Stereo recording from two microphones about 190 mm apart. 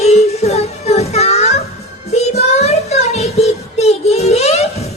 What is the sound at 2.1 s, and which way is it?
Child singing, 35° left (ahead or behind).